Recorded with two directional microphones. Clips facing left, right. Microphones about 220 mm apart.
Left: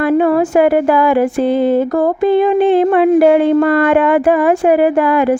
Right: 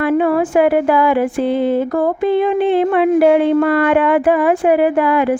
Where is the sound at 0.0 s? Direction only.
40° left (ahead or behind).